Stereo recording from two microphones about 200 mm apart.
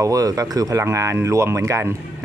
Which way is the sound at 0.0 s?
15° right (ahead or behind).